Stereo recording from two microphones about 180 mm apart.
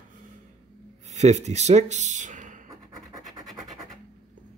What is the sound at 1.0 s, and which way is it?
Speech, 40° right (ahead or behind).